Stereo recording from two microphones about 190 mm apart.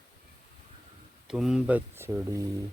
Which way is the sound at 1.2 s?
Centre (ahead or behind).